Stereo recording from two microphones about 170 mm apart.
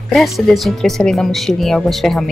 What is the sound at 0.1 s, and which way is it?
A woman's voice, centre (ahead or behind).